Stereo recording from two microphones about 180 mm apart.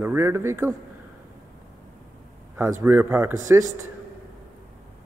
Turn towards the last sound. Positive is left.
turn(degrees=-15)  # may be behind; listen again after turning